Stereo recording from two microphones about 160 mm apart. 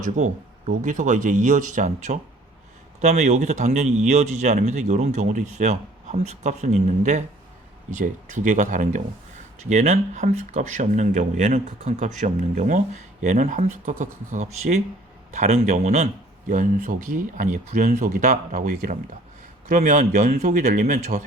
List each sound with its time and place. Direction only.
0.0 s speech: 50° right (ahead or behind)